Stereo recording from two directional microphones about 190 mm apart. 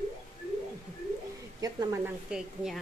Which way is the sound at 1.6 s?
15° right (ahead or behind).